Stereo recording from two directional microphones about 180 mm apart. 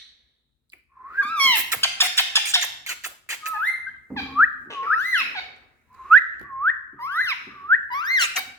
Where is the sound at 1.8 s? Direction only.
15° left (ahead or behind).